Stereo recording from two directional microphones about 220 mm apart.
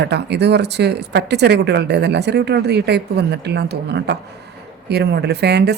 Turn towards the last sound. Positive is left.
turn(degrees=-50)  # may be behind; listen again after turning